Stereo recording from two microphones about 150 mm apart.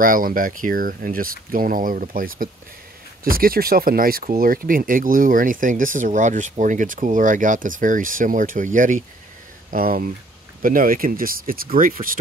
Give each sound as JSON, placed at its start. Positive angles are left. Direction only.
{"t": 0.0, "sound": "speech", "side_deg": -65}
{"t": 9.7, "sound": "speech", "side_deg": -70}